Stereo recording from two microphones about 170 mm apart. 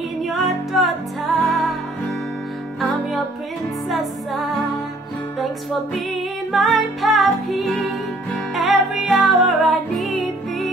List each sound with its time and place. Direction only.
0.2 s music: centre (ahead or behind)
3.9 s music: centre (ahead or behind)
6.5 s music: centre (ahead or behind)